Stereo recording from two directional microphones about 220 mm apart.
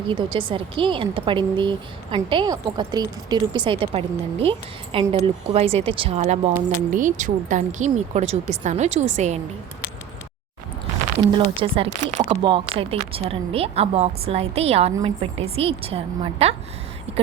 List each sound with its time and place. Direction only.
0.1 s a woman's voice: 20° right (ahead or behind)
11.2 s a woman's voice: 20° right (ahead or behind)